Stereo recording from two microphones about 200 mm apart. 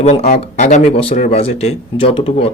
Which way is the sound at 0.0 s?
35° left (ahead or behind).